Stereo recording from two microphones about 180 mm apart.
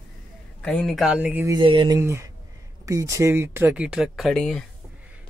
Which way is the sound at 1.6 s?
25° right (ahead or behind).